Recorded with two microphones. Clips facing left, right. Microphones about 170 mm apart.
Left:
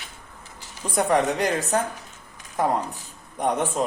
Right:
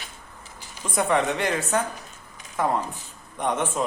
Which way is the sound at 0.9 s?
40° left (ahead or behind).